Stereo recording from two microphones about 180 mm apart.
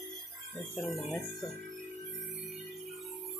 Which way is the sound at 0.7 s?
Centre (ahead or behind).